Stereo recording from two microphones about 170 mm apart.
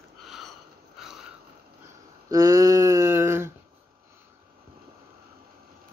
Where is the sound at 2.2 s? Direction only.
20° right (ahead or behind).